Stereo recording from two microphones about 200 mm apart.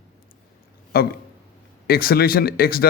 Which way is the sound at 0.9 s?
50° left (ahead or behind).